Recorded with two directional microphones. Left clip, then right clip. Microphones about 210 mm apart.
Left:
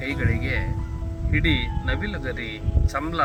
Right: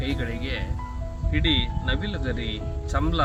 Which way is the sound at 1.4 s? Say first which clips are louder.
Right 1 dB; 50° right (ahead or behind).